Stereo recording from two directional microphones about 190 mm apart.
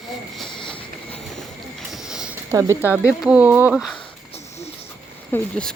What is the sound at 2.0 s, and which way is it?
Sniff, 5° right (ahead or behind).